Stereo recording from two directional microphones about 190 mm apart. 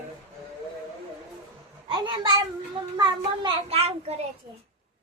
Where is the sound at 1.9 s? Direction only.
25° right (ahead or behind).